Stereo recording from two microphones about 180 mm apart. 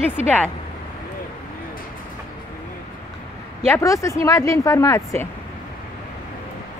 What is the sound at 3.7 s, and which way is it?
Speech, 15° left (ahead or behind).